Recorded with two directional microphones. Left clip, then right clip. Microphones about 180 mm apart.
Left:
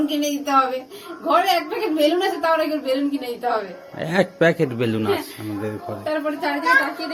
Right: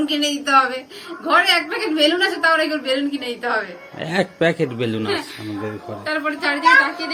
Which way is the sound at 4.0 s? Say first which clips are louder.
Left 1 dB; centre (ahead or behind).